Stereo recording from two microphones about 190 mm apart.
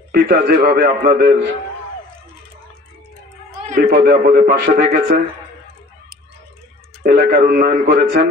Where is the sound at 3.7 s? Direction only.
50° right (ahead or behind).